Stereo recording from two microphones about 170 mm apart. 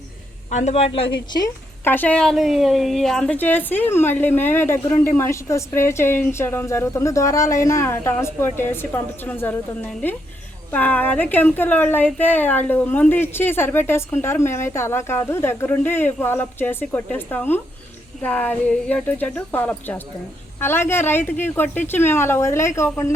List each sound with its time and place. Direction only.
0.5 s a woman's voice: 40° left (ahead or behind)
1.8 s speech: 10° left (ahead or behind)